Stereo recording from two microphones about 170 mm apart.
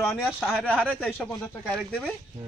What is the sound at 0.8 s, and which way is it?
Speech, 5° left (ahead or behind).